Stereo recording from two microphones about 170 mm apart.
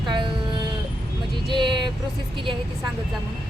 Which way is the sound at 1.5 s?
30° right (ahead or behind).